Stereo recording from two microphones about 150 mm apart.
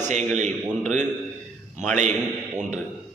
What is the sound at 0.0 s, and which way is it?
A man's voice, 50° right (ahead or behind).